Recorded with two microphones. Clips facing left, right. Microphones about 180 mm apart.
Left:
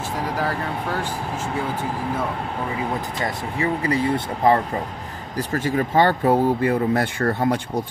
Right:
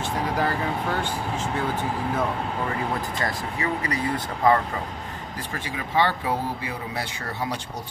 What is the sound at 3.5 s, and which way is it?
Speech, 30° left (ahead or behind).